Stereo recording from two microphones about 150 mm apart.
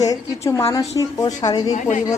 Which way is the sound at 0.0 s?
20° left (ahead or behind).